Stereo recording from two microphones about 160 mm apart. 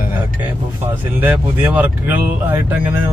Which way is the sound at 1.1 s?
10° right (ahead or behind).